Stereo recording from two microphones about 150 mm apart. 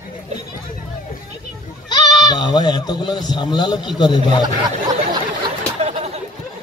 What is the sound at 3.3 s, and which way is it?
A man's voice, 30° left (ahead or behind).